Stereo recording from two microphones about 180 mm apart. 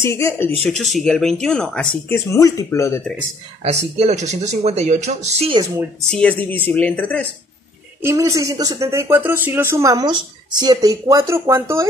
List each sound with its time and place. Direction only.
0.0 s speech: 15° left (ahead or behind)
0.7 s speech: centre (ahead or behind)
3.6 s speech: 40° right (ahead or behind)
6.0 s speech: 5° left (ahead or behind)
8.0 s speech: 15° right (ahead or behind)